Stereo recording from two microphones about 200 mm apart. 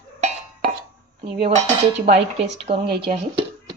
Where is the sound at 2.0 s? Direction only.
35° right (ahead or behind).